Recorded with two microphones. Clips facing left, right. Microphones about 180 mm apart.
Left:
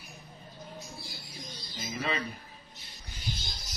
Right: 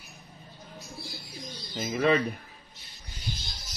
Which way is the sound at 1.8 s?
60° right (ahead or behind).